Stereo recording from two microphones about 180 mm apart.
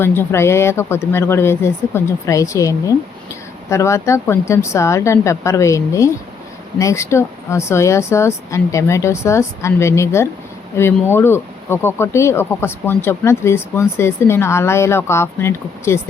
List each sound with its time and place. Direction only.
0.0 s speech: 15° left (ahead or behind)